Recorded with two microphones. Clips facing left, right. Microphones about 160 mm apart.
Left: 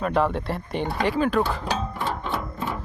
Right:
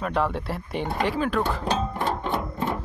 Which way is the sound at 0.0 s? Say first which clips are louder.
Left 3 dB; centre (ahead or behind).